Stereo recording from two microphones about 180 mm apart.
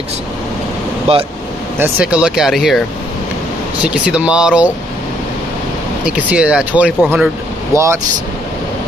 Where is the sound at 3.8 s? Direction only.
5° right (ahead or behind).